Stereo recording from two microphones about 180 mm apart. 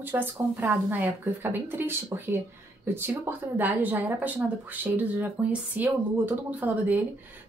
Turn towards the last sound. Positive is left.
turn(degrees=-10)  # may be behind; listen again after turning